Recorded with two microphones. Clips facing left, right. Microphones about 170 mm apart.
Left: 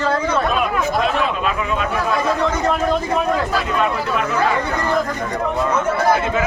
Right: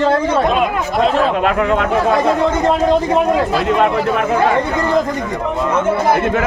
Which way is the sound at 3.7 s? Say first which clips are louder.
Right 6 dB; 65° right (ahead or behind).